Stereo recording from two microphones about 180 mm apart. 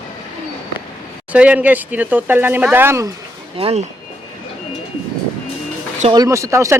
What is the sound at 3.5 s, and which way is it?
Speech, 30° right (ahead or behind).